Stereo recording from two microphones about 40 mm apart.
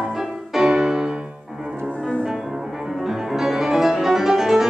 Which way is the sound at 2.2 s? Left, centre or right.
Centre.